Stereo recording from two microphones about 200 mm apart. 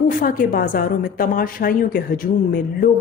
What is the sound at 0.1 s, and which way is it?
A woman's voice, 45° left (ahead or behind).